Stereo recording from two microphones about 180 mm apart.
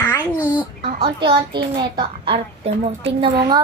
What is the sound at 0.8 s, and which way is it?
Speech, 55° right (ahead or behind).